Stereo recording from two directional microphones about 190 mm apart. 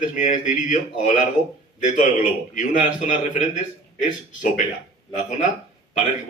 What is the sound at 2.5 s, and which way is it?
Speech, 40° left (ahead or behind).